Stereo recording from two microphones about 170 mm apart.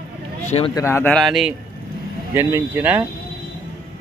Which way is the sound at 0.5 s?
35° left (ahead or behind).